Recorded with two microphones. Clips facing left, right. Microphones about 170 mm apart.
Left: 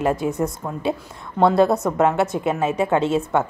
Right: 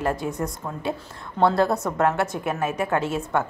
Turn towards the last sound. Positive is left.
turn(degrees=25)  # may be behind; listen again after turning